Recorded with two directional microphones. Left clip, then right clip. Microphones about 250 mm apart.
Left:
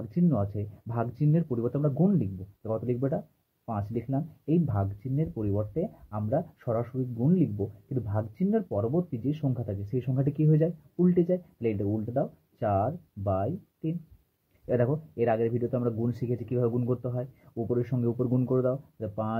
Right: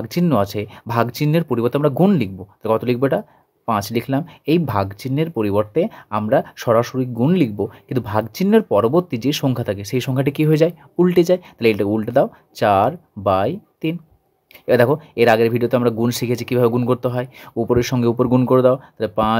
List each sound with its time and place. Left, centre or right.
0.1 s speech: right